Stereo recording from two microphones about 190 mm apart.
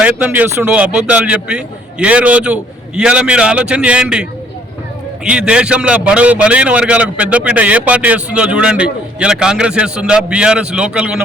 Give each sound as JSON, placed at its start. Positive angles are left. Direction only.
{"t": 0.0, "sound": "a man's voice", "side_deg": -10}